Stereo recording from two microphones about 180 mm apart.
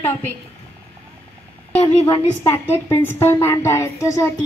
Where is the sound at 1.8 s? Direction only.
20° left (ahead or behind).